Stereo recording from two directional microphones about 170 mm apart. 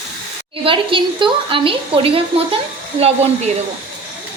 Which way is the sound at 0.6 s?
30° right (ahead or behind).